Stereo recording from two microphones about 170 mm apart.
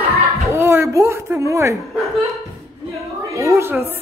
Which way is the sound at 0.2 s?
15° right (ahead or behind).